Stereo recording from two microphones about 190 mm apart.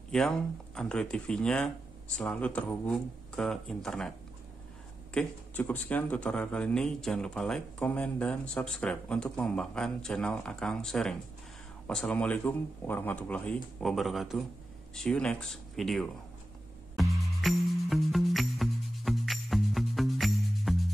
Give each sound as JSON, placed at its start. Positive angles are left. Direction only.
{"t": 0.1, "sound": "a man's voice", "side_deg": 5}
{"t": 5.1, "sound": "a man's voice", "side_deg": 10}
{"t": 16.9, "sound": "music", "side_deg": 0}